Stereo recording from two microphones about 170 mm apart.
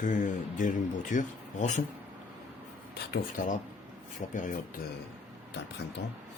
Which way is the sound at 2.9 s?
70° left (ahead or behind).